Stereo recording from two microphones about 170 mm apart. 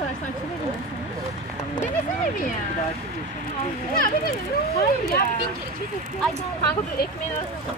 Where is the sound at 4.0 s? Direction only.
60° left (ahead or behind).